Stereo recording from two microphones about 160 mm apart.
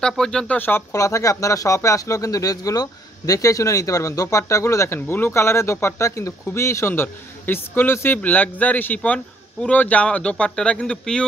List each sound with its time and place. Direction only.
0.0 s speech: 5° left (ahead or behind)